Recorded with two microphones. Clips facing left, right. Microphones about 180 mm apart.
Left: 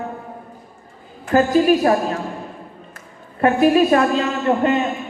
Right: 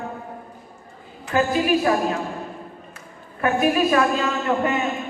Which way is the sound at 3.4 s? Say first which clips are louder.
Left 5 dB; 35° left (ahead or behind).